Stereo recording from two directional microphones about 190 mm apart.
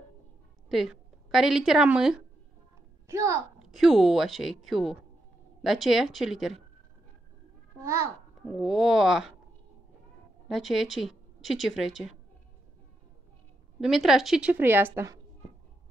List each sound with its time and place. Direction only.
0.7 s a woman's voice: centre (ahead or behind)
3.1 s a child's voice: 15° right (ahead or behind)
3.5 s speech: centre (ahead or behind)
7.8 s a child's voice: 15° right (ahead or behind)
8.5 s speech: 5° right (ahead or behind)
10.5 s a woman's voice: centre (ahead or behind)
13.7 s speech: centre (ahead or behind)